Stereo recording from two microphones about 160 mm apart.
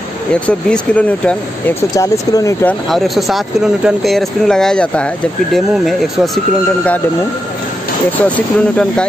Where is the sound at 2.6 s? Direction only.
Centre (ahead or behind).